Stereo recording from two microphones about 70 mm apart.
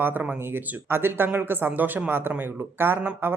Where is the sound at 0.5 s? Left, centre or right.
Right.